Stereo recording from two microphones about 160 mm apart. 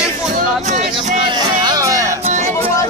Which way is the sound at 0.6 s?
50° right (ahead or behind).